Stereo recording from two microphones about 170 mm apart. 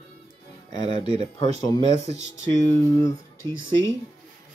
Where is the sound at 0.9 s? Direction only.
30° right (ahead or behind).